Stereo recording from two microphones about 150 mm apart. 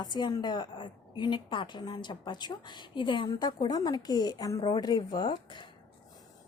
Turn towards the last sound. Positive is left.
turn(degrees=30)  # may be behind; listen again after turning